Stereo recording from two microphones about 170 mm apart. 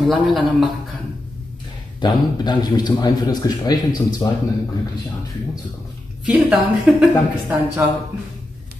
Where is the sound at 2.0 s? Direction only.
25° left (ahead or behind).